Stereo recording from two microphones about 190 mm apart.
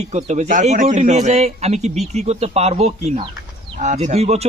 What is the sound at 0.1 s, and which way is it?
A man's voice, 35° right (ahead or behind).